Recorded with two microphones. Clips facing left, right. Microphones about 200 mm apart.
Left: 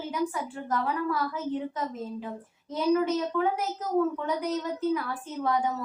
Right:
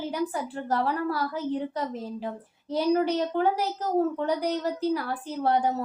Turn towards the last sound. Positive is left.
turn(degrees=-35)  # may be behind; listen again after turning